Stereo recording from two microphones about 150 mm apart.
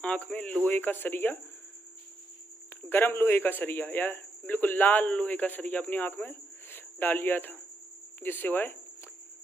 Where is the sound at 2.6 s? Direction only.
15° left (ahead or behind).